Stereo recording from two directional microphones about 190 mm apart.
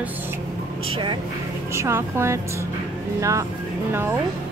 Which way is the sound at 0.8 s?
25° right (ahead or behind).